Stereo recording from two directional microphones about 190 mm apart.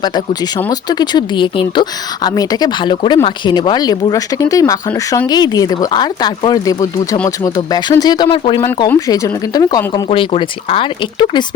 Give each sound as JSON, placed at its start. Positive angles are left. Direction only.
{"t": 0.0, "sound": "speech", "side_deg": 20}
{"t": 8.9, "sound": "speech", "side_deg": 15}